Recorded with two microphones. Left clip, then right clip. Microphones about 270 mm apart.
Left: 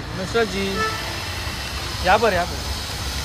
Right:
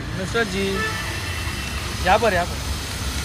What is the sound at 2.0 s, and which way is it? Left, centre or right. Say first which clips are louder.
Speech: left 1 dB; left.